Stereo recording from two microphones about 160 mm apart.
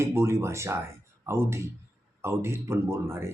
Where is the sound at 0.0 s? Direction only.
15° right (ahead or behind).